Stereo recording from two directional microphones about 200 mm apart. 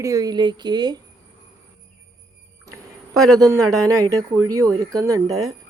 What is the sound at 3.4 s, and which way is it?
Speech, 15° right (ahead or behind).